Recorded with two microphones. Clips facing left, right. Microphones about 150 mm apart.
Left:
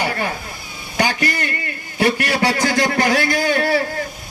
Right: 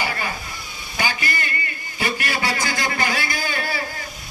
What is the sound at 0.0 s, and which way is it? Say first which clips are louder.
Stir: left 5 dB; 60° left (ahead or behind).